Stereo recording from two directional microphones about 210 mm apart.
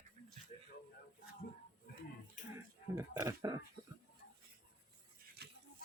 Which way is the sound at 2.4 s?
40° left (ahead or behind).